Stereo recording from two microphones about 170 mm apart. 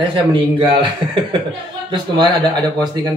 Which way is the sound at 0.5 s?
30° right (ahead or behind).